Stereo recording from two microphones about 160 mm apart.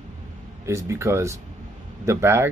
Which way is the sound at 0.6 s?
15° right (ahead or behind).